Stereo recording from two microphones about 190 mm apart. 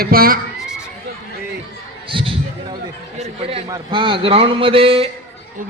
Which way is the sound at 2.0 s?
25° right (ahead or behind).